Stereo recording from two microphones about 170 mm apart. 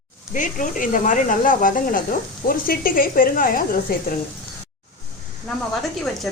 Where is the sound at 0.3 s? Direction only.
50° left (ahead or behind).